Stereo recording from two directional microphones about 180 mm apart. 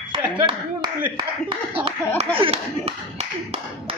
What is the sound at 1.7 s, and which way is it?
Speech, 30° right (ahead or behind).